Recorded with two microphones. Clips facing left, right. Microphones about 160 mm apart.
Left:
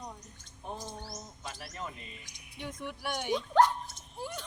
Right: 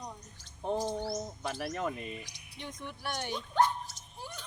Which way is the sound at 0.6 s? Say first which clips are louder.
Right 9 dB; 90° right.